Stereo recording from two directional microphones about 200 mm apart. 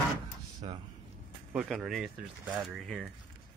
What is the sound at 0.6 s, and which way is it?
Speech, 30° right (ahead or behind).